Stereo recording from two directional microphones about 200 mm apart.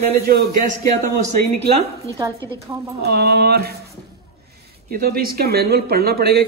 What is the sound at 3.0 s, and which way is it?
Speech, 50° right (ahead or behind).